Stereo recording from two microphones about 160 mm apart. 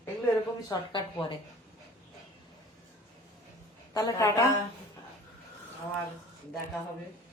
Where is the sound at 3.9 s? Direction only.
20° left (ahead or behind).